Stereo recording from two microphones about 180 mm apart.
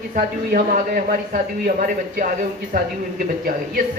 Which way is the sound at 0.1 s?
50° right (ahead or behind).